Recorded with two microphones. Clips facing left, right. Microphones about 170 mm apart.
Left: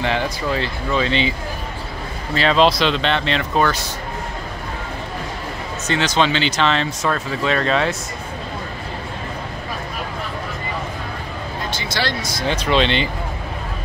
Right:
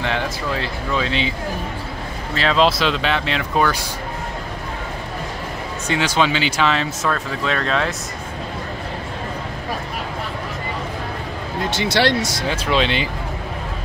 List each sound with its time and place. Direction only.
0.0 s speech: centre (ahead or behind)
2.3 s speech: centre (ahead or behind)
5.9 s speech: 10° right (ahead or behind)
11.8 s speech: 70° right (ahead or behind)
12.4 s speech: 5° right (ahead or behind)